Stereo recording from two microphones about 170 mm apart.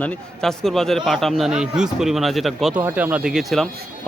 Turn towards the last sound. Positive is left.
turn(degrees=0)  # may be behind; listen again after turning